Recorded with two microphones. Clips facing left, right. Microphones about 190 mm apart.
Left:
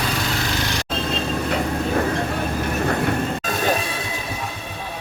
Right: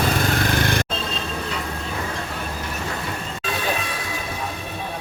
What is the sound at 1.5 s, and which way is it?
Train, 60° left (ahead or behind).